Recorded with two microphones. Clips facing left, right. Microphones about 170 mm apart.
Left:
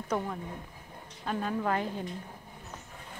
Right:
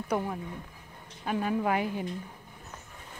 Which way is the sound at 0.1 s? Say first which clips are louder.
Right 1 dB; 10° right (ahead or behind).